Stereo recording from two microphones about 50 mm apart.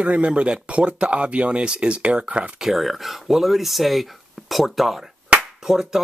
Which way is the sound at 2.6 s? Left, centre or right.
Centre.